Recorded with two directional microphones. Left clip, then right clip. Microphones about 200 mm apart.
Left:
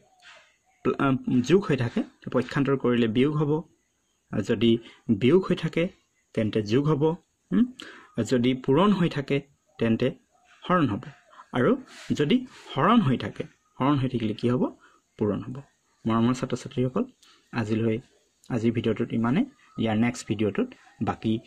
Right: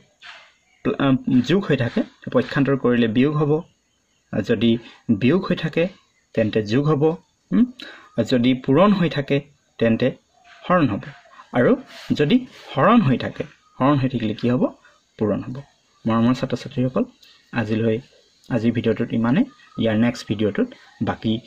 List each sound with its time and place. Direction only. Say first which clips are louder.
0.8 s speech: right 4 dB; 35° left (ahead or behind)